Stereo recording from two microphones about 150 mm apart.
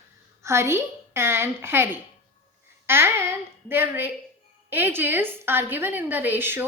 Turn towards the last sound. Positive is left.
turn(degrees=-15)  # may be behind; listen again after turning